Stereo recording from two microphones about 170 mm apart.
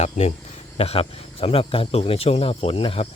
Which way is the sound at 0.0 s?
40° left (ahead or behind).